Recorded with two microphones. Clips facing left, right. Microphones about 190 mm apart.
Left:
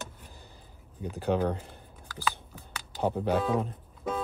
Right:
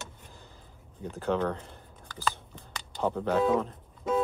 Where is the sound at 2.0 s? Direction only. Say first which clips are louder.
Even; 5° left (ahead or behind).